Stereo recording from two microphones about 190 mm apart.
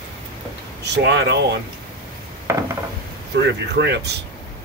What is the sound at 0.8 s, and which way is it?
Speech, 60° right (ahead or behind).